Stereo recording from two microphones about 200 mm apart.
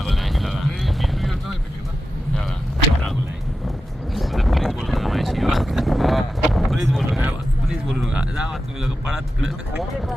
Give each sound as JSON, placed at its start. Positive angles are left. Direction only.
{"t": 0.0, "sound": "music", "side_deg": 0}
{"t": 4.1, "sound": "a sound", "side_deg": 0}
{"t": 9.5, "sound": "vehicle", "side_deg": 0}